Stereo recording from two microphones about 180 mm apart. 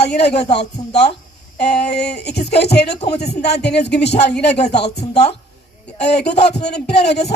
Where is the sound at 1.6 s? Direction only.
65° left (ahead or behind).